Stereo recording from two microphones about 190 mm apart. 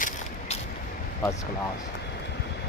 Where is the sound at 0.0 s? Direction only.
35° left (ahead or behind).